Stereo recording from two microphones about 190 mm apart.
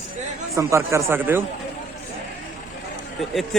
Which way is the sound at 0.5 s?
15° right (ahead or behind).